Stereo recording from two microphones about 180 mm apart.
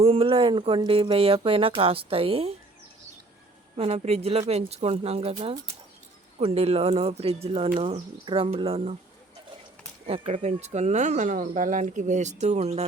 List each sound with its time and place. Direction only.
0.0 s speech: 30° right (ahead or behind)
3.8 s speech: 35° right (ahead or behind)
10.1 s speech: 35° right (ahead or behind)